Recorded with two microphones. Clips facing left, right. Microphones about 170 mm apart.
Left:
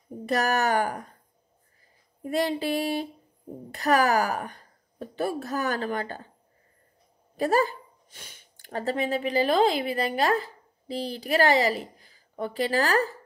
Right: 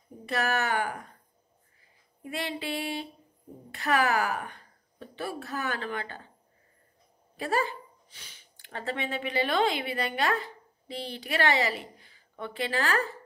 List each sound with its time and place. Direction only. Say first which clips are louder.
0.3 s a woman's voice: left 4 dB; 40° left (ahead or behind)
2.2 s a woman's voice: left 8 dB; 40° left (ahead or behind)
7.3 s speech: left 6 dB; 40° left (ahead or behind)